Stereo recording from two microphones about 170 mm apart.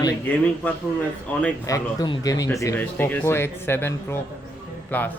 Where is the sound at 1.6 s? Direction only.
20° left (ahead or behind).